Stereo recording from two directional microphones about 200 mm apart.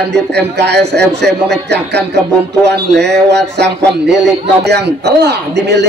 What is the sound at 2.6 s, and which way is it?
Speech, 55° right (ahead or behind).